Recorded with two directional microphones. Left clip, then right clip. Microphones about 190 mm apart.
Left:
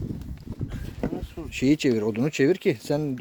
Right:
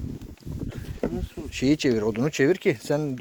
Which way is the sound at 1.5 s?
25° left (ahead or behind).